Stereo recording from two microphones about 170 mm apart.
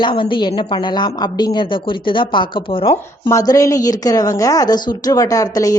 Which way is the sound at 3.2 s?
20° left (ahead or behind).